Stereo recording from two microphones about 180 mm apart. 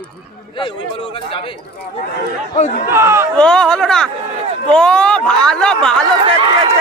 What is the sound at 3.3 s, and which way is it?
Speech, 5° left (ahead or behind).